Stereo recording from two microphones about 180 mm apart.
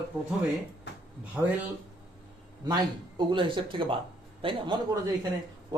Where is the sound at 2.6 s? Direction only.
25° right (ahead or behind).